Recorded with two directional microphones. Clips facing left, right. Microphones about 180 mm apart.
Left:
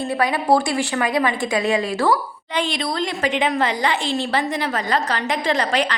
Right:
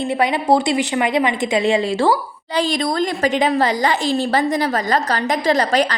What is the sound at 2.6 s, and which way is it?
A woman's voice, 40° right (ahead or behind).